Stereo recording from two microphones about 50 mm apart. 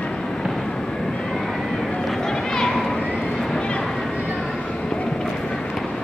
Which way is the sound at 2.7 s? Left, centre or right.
Centre.